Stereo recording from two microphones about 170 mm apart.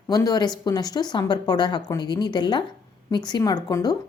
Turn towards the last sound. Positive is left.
turn(degrees=25)  # may be behind; listen again after turning